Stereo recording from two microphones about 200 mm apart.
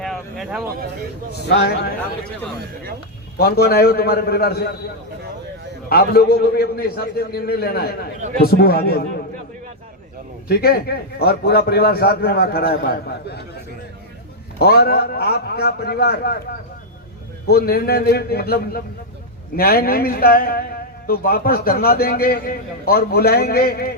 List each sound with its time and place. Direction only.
0.0 s a sound: centre (ahead or behind)
1.5 s a man's voice: 55° left (ahead or behind)
3.3 s a man's voice: 50° left (ahead or behind)
5.9 s a man's voice: 50° left (ahead or behind)
10.5 s a man's voice: 50° left (ahead or behind)
14.6 s a man's voice: 50° left (ahead or behind)
17.5 s a man's voice: 50° left (ahead or behind)